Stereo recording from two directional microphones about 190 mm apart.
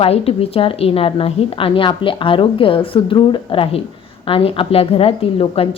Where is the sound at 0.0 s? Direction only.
30° left (ahead or behind).